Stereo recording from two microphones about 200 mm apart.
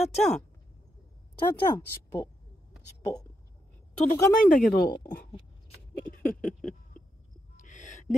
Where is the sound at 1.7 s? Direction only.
15° left (ahead or behind).